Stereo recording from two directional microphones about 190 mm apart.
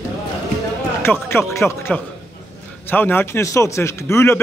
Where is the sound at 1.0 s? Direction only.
10° left (ahead or behind).